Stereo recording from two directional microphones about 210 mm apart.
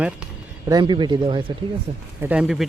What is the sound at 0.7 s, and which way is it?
Speech, 20° right (ahead or behind).